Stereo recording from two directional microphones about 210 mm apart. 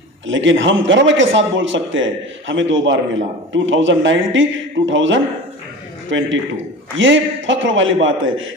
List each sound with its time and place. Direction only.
0.3 s a man's voice: 65° right (ahead or behind)